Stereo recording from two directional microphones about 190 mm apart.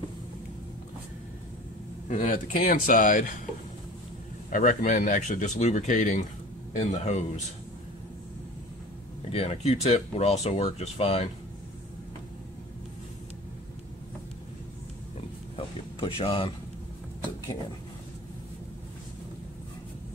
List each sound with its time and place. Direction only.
2.0 s speech: 40° left (ahead or behind)
4.5 s speech: 45° left (ahead or behind)
9.3 s speech: 35° left (ahead or behind)
15.1 s a sound: 30° left (ahead or behind)